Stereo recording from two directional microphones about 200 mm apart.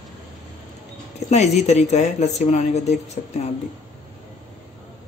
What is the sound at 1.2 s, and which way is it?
Speech, 35° left (ahead or behind).